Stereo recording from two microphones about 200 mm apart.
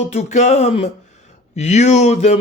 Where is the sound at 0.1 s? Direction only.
35° left (ahead or behind).